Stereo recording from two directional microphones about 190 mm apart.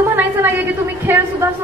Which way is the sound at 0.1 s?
10° right (ahead or behind).